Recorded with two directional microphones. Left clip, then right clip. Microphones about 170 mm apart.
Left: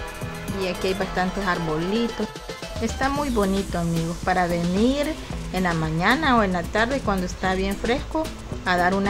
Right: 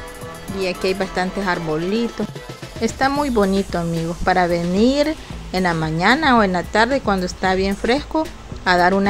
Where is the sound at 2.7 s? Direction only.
30° right (ahead or behind).